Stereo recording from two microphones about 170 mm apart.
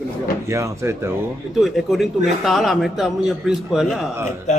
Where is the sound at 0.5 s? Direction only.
15° right (ahead or behind).